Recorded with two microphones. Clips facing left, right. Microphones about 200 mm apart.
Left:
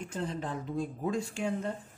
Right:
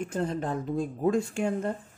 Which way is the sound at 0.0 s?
50° right (ahead or behind).